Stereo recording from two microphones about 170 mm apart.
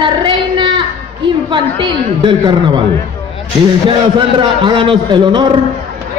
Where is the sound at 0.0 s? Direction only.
30° right (ahead or behind).